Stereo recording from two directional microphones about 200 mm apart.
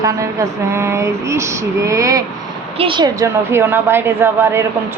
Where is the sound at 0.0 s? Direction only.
15° right (ahead or behind).